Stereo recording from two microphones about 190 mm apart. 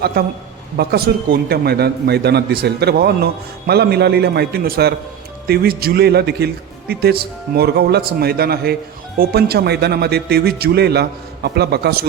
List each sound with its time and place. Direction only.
0.0 s a man's voice: 55° right (ahead or behind)